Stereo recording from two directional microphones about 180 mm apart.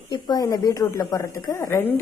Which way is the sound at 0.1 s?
20° left (ahead or behind).